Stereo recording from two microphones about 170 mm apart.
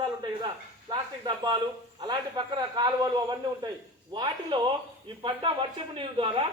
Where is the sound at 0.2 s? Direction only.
25° right (ahead or behind).